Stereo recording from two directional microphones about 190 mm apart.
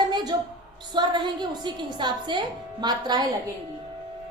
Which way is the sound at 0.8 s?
25° right (ahead or behind).